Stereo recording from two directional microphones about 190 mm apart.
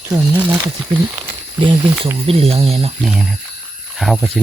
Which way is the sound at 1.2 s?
25° right (ahead or behind).